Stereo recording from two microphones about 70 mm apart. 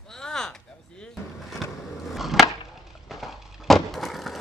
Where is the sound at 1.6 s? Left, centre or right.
Centre.